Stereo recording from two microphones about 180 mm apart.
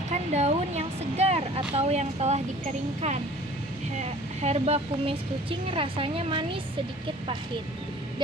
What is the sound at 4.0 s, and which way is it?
Speech, 35° right (ahead or behind).